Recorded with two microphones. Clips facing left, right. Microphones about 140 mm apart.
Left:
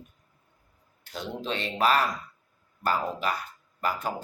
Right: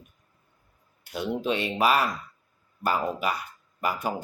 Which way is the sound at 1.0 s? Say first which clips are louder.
Right 6 dB; 10° right (ahead or behind).